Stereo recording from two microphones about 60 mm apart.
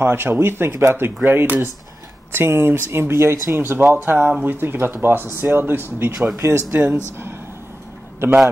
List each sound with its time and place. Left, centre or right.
0.0 s speech: right